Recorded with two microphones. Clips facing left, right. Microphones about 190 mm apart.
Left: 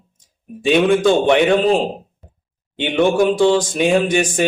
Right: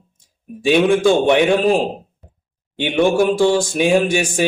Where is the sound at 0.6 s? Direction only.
10° right (ahead or behind).